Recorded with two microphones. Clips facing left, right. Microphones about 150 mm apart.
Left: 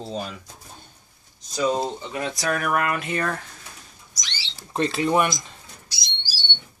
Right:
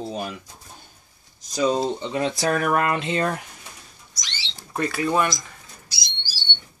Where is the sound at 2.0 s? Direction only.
25° right (ahead or behind).